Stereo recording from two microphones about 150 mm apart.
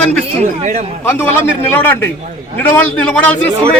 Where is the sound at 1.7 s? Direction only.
15° left (ahead or behind).